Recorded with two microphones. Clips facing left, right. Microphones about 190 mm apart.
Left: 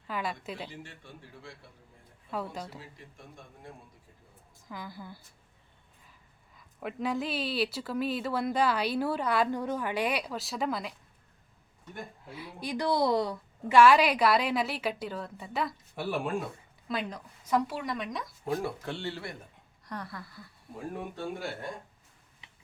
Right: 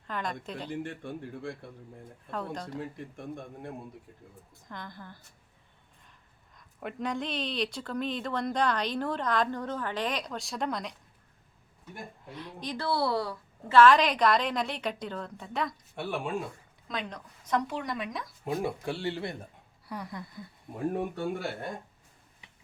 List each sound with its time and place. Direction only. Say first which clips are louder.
0.1 s a woman's voice: even; 5° left (ahead or behind)
0.7 s a man's voice: right 11 dB; 55° right (ahead or behind)
2.3 s speech: even; 5° left (ahead or behind)
2.7 s a man's voice: right 10 dB; 55° right (ahead or behind)
4.7 s speech: left 2 dB; 5° left (ahead or behind)
6.6 s speech: left 1 dB; 5° left (ahead or behind)
12.3 s a woman's voice: left 1 dB; 5° left (ahead or behind)
18.4 s speech: right 2 dB; 20° right (ahead or behind)
19.8 s speech: right 1 dB; 10° right (ahead or behind)